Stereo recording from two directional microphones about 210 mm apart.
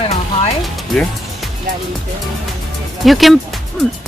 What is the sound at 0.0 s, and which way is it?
Music, 30° left (ahead or behind).